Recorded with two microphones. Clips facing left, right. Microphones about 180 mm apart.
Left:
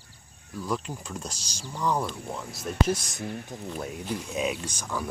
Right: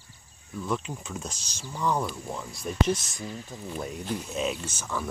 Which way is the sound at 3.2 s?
60° left (ahead or behind).